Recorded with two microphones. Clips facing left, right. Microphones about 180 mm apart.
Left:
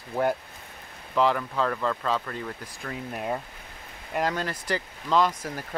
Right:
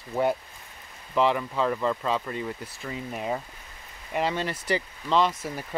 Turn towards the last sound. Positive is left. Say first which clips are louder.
# even
turn(degrees=5)  # may be behind; listen again after turning